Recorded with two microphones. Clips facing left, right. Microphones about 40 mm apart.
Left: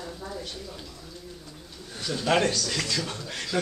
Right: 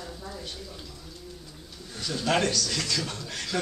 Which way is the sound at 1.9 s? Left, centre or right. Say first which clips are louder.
Left 2 dB; centre.